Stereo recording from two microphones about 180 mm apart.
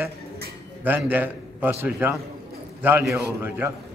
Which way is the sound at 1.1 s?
10° right (ahead or behind).